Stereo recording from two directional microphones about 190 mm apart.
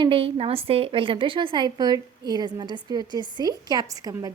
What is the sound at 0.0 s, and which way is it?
A woman's voice, 30° right (ahead or behind).